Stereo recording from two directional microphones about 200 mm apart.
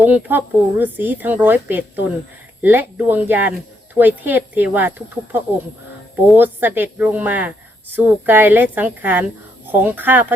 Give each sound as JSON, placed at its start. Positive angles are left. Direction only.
{"t": 0.0, "sound": "speech", "side_deg": -10}